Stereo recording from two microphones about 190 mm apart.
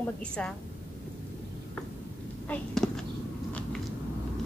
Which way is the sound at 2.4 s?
5° left (ahead or behind).